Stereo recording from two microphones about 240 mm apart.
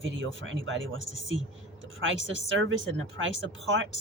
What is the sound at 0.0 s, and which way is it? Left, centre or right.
Speech, right.